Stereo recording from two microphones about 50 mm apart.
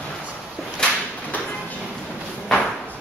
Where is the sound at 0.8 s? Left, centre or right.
Centre.